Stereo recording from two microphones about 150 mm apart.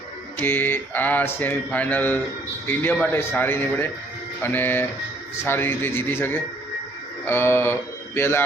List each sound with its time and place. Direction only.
0.4 s speech: 15° left (ahead or behind)
7.3 s mantra: 15° left (ahead or behind)